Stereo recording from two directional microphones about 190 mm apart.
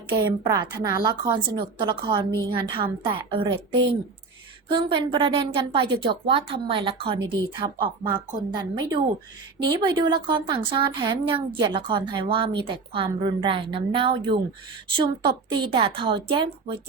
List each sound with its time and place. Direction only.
0.1 s speech: 20° right (ahead or behind)
4.7 s speech: 25° right (ahead or behind)